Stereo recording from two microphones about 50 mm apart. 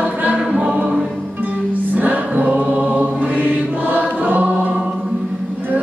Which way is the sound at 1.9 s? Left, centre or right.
Right.